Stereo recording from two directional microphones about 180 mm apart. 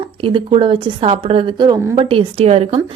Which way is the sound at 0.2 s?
30° right (ahead or behind).